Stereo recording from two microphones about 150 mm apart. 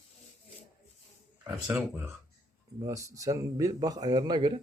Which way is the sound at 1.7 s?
10° right (ahead or behind).